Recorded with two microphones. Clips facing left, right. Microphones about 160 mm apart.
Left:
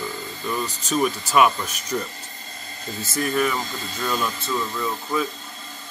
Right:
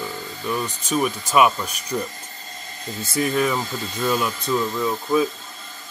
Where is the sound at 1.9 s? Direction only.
15° right (ahead or behind).